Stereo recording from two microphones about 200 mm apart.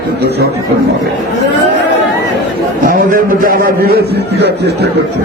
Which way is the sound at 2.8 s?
45° right (ahead or behind).